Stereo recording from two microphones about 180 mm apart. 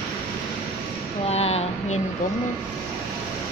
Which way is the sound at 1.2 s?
35° left (ahead or behind).